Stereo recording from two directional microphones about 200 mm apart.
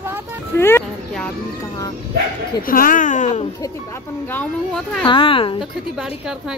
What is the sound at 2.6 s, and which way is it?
Speech, 45° left (ahead or behind).